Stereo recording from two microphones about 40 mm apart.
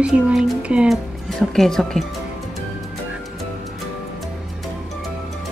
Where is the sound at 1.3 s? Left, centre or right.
Centre.